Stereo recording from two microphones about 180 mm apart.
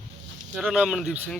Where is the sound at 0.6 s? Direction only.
5° right (ahead or behind).